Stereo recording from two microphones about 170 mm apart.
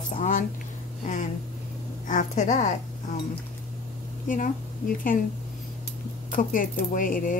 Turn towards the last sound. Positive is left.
turn(degrees=50)  # may be behind; listen again after turning